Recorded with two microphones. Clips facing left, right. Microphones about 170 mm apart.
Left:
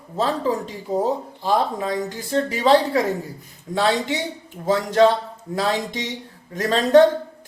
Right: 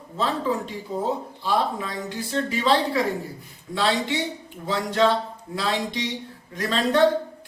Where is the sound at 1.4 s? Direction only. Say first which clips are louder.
Left 4 dB; 45° left (ahead or behind).